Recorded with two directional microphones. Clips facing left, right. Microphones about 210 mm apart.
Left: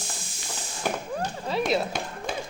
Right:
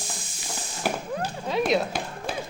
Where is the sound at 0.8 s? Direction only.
5° right (ahead or behind).